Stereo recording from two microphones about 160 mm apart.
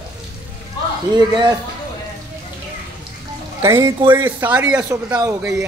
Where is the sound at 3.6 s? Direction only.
20° right (ahead or behind).